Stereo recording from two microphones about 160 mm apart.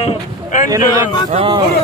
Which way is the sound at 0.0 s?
50° left (ahead or behind).